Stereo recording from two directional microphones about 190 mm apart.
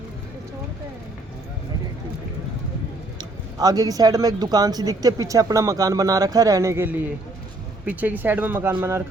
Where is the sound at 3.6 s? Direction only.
20° right (ahead or behind).